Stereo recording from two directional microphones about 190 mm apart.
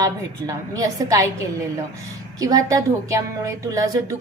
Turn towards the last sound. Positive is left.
turn(degrees=-20)  # may be behind; listen again after turning